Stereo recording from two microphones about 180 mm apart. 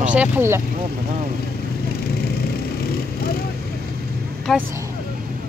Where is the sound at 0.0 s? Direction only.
10° right (ahead or behind).